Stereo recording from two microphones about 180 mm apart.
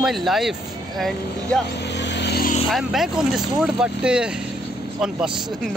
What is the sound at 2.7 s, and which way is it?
A man's voice, centre (ahead or behind).